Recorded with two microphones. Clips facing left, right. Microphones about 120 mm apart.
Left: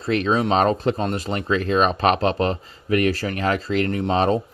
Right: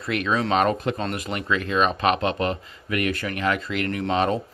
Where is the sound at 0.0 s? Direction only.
30° left (ahead or behind).